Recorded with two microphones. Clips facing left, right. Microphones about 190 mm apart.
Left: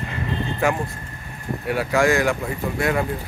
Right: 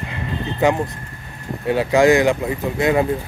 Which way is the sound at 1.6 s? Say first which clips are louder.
Right 5 dB; 20° right (ahead or behind).